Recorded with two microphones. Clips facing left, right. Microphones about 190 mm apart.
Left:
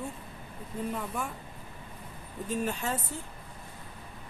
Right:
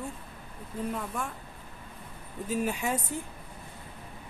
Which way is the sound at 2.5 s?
10° right (ahead or behind).